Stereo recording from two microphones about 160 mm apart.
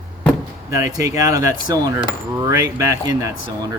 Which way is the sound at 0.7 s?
20° right (ahead or behind).